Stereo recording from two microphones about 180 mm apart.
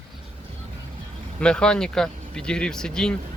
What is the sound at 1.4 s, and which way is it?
Speech, 5° left (ahead or behind).